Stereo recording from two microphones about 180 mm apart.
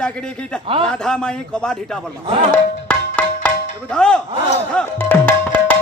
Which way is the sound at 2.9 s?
10° left (ahead or behind).